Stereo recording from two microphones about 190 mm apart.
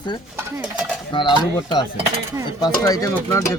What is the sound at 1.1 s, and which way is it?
Speech, 25° left (ahead or behind).